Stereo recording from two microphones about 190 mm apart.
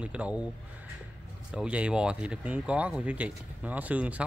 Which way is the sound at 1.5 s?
5° right (ahead or behind).